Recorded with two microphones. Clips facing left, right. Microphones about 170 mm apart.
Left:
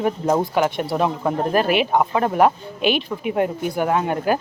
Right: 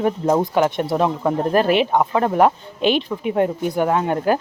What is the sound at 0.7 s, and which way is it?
Speech, 20° right (ahead or behind).